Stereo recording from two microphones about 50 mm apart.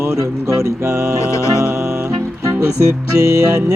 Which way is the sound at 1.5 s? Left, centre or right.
Right.